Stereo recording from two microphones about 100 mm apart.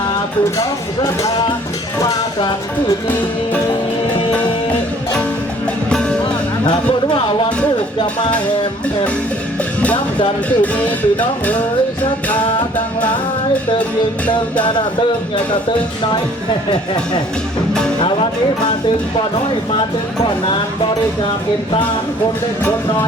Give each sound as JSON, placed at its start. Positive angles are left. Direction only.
{"t": 2.0, "sound": "speech", "side_deg": 40}
{"t": 5.9, "sound": "music", "side_deg": 10}
{"t": 6.7, "sound": "speech", "side_deg": 55}
{"t": 10.6, "sound": "music", "side_deg": 15}
{"t": 12.3, "sound": "music", "side_deg": 15}
{"t": 14.3, "sound": "music", "side_deg": 15}